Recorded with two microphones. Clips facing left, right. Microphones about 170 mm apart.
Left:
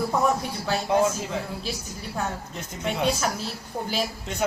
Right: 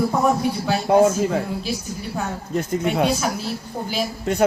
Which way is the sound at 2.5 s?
55° right (ahead or behind).